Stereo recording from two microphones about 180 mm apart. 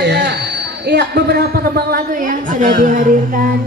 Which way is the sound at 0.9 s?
65° right (ahead or behind).